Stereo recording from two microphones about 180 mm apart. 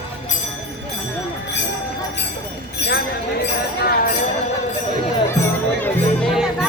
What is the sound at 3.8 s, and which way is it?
Jingle bell, 55° left (ahead or behind).